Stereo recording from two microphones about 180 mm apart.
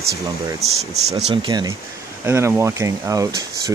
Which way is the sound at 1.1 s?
25° right (ahead or behind).